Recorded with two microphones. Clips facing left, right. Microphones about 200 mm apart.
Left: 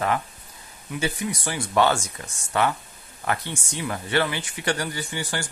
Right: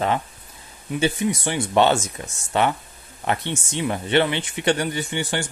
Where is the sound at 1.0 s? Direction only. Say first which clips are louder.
Right 6 dB; 25° right (ahead or behind).